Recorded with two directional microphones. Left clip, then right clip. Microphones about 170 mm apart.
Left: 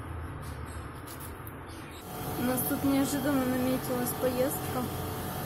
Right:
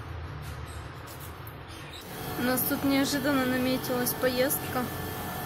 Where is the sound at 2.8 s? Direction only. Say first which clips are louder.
Right 2 dB; 5° right (ahead or behind).